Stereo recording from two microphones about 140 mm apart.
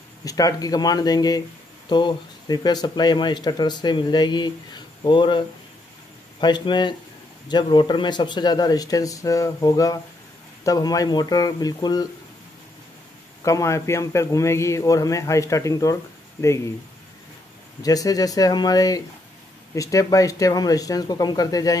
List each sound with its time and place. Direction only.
0.2 s a man's voice: 25° left (ahead or behind)
6.4 s a man's voice: 35° left (ahead or behind)
13.4 s a man's voice: 25° left (ahead or behind)
17.8 s a man's voice: 25° left (ahead or behind)